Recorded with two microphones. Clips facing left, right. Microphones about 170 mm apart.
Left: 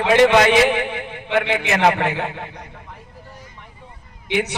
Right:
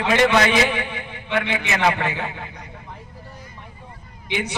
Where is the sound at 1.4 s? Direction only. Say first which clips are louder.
Left 4 dB; 50° left (ahead or behind).